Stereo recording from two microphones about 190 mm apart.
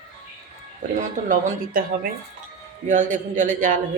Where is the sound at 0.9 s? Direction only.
40° right (ahead or behind).